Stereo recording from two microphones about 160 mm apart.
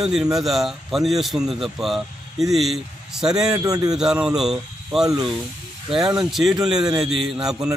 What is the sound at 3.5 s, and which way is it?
Speech, 25° right (ahead or behind).